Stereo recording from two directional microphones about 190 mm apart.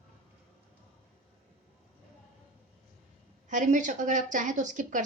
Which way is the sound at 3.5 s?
40° right (ahead or behind).